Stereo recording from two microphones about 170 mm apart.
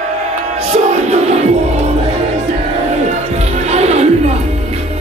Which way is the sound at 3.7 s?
40° right (ahead or behind).